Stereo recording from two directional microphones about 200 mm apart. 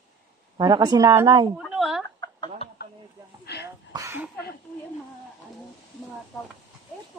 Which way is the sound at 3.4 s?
55° left (ahead or behind).